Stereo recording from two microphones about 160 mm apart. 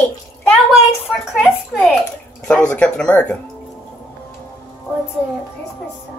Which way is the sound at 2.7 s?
5° left (ahead or behind).